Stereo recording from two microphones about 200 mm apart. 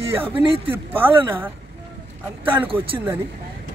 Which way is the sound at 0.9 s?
10° right (ahead or behind).